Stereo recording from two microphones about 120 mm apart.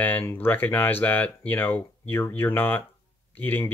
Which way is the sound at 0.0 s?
15° left (ahead or behind).